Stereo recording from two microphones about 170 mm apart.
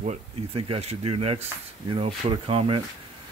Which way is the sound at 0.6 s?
35° right (ahead or behind).